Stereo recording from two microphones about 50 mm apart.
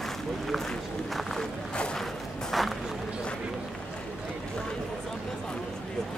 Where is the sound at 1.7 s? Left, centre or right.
Centre.